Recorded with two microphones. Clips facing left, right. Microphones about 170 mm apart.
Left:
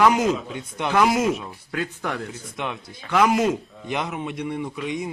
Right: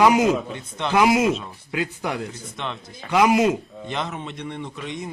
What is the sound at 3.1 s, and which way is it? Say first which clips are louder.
Speech: right 2 dB; 10° right (ahead or behind).